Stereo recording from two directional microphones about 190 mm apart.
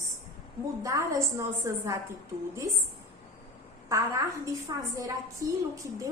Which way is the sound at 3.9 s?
15° right (ahead or behind).